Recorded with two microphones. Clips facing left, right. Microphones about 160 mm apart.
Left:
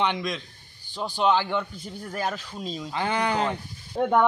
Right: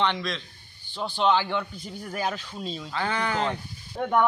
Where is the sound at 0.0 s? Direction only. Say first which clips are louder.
Even; 15° left (ahead or behind).